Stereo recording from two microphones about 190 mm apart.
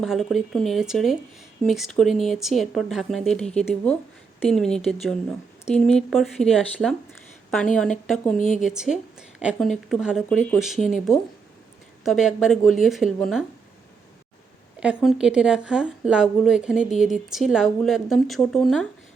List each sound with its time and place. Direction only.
0.0 s speech: centre (ahead or behind)
8.4 s a woman's voice: 45° left (ahead or behind)
8.6 s speech: 5° right (ahead or behind)
12.0 s speech: centre (ahead or behind)
14.8 s speech: 5° right (ahead or behind)